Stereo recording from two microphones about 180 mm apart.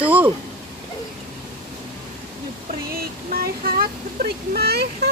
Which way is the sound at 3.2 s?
55° right (ahead or behind).